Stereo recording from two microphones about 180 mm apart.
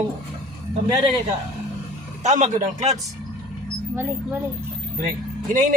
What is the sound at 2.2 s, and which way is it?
Speech, 40° right (ahead or behind).